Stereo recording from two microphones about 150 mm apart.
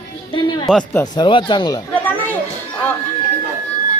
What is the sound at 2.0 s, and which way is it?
Chatter, 15° left (ahead or behind).